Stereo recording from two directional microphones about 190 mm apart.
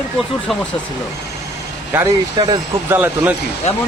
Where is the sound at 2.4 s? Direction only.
20° right (ahead or behind).